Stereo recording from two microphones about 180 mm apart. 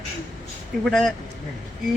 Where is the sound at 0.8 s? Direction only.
Centre (ahead or behind).